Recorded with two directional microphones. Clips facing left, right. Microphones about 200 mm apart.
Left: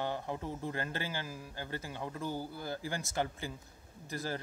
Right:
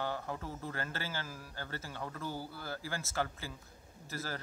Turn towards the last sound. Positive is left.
turn(degrees=15)  # may be behind; listen again after turning